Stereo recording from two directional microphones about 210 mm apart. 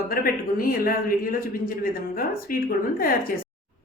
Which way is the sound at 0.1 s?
45° left (ahead or behind).